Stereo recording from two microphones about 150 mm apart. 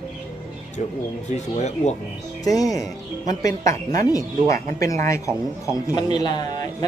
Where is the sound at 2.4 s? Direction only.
25° left (ahead or behind).